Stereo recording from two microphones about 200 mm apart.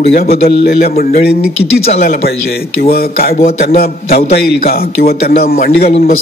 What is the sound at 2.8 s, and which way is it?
A man's voice, 50° left (ahead or behind).